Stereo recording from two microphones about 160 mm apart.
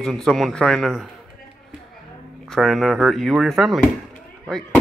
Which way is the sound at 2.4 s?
Centre (ahead or behind).